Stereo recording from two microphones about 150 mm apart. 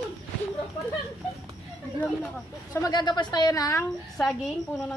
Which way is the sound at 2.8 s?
30° left (ahead or behind).